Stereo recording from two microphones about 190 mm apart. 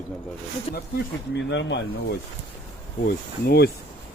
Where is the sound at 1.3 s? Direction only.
70° left (ahead or behind).